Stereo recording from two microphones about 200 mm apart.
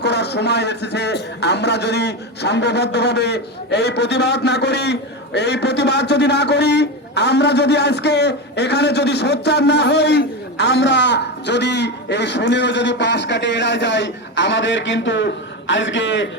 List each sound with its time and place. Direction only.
0.0 s a man's voice: 55° left (ahead or behind)